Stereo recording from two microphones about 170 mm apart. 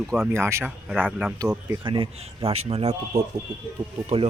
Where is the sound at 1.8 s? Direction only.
30° right (ahead or behind).